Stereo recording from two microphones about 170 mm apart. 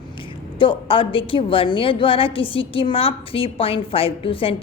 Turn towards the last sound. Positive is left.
turn(degrees=35)  # may be behind; listen again after turning